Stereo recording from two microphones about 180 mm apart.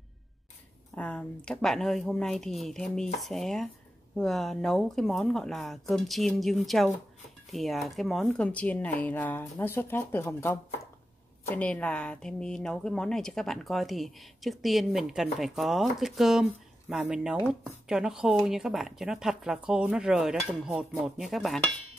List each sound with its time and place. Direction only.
0.9 s speech: 5° left (ahead or behind)